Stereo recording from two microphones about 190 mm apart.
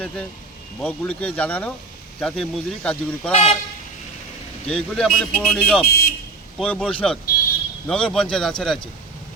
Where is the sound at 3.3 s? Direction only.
35° left (ahead or behind).